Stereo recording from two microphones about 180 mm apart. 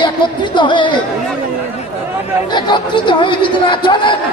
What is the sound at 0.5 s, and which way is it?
Speech, 25° left (ahead or behind).